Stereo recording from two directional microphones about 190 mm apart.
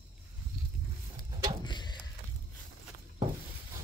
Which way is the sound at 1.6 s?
25° left (ahead or behind).